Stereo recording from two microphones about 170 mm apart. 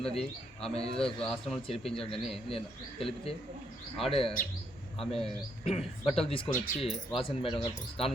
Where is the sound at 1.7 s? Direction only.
Centre (ahead or behind).